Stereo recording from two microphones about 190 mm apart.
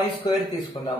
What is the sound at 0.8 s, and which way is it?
Speech, 35° left (ahead or behind).